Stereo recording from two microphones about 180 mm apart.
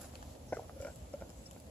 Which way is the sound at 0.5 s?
10° left (ahead or behind).